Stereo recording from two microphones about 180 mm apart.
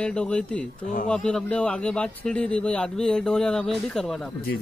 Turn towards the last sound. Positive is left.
turn(degrees=0)  # may be behind; listen again after turning